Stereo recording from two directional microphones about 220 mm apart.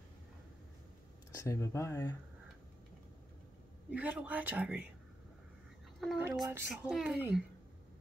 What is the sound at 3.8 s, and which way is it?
A woman's voice, 5° right (ahead or behind).